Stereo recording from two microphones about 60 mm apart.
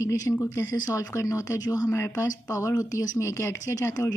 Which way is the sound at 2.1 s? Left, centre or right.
Left.